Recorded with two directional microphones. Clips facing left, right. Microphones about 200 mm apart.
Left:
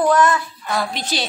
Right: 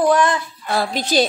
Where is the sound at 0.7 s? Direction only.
35° right (ahead or behind).